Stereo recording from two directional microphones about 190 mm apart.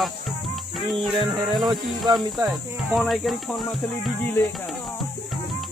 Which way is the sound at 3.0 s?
Centre (ahead or behind).